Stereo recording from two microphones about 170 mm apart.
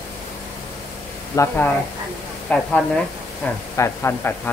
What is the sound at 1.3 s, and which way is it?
Speech, 15° left (ahead or behind).